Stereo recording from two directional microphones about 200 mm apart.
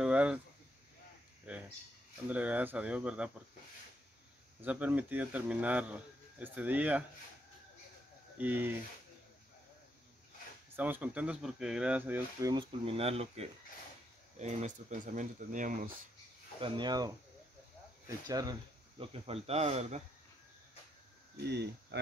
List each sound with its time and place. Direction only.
0.0 s a sound: 5° right (ahead or behind)
1.5 s speech: 5° right (ahead or behind)
4.6 s speech: 5° right (ahead or behind)
8.4 s speech: 10° right (ahead or behind)
10.8 s speech: 5° right (ahead or behind); by 16.0 s 40° right (ahead or behind)
16.5 s speech: 25° right (ahead or behind)
21.4 s speech: 55° right (ahead or behind)